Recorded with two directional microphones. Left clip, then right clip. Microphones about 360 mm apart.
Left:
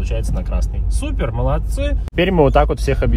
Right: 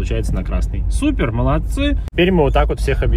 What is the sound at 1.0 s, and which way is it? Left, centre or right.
Speech, centre.